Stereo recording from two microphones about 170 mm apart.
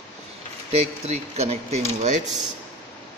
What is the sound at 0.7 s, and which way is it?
Speech, 40° right (ahead or behind).